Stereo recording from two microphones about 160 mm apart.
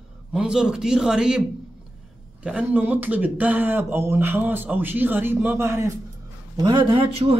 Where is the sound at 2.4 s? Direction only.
10° right (ahead or behind).